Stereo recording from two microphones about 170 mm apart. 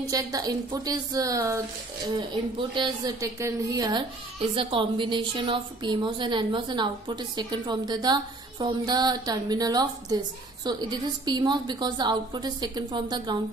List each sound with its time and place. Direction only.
0.1 s a child's voice: 20° right (ahead or behind)
2.7 s a child's voice: 25° right (ahead or behind)